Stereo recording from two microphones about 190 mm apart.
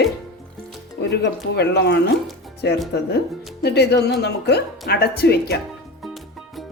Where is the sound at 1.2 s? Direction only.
65° left (ahead or behind).